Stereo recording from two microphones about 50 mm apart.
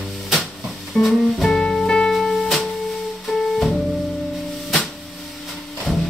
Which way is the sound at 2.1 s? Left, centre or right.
Centre.